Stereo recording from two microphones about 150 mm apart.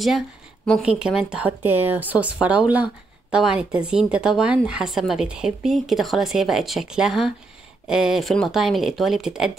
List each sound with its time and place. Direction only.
0.7 s speech: centre (ahead or behind)